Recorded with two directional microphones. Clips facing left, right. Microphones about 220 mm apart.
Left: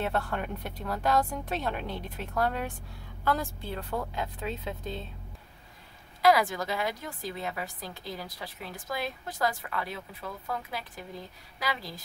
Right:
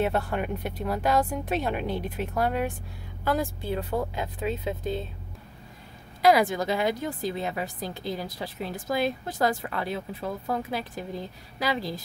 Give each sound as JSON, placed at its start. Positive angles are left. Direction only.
{"t": 0.0, "sound": "speech", "side_deg": -10}
{"t": 6.2, "sound": "a woman's voice", "side_deg": -20}